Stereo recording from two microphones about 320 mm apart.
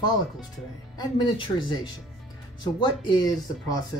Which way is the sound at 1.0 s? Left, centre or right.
Centre.